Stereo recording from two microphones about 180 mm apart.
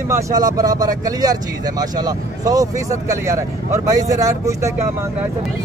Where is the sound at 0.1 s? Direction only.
20° right (ahead or behind).